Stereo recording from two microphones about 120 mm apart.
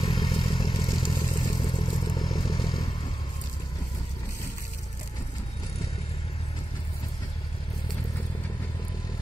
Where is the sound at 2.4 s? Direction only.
50° left (ahead or behind).